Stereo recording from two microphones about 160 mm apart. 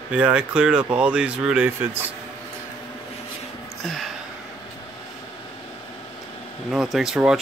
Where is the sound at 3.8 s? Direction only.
Centre (ahead or behind).